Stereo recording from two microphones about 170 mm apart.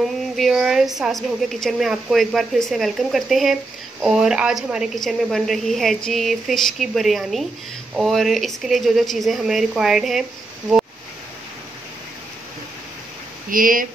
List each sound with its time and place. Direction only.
0.4 s a woman's voice: 5° right (ahead or behind)
13.5 s speech: 55° right (ahead or behind)